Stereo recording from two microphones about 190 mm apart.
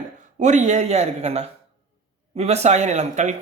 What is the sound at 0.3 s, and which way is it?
A man's voice, 40° right (ahead or behind).